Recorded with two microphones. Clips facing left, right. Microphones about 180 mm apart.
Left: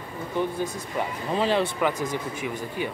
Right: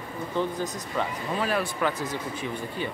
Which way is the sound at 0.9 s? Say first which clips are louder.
Left 2 dB; 25° left (ahead or behind).